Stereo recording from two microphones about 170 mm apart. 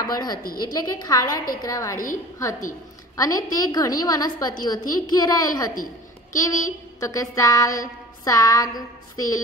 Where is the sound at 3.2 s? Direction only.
20° left (ahead or behind).